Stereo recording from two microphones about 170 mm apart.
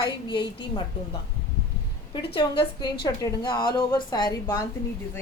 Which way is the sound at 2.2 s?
30° left (ahead or behind).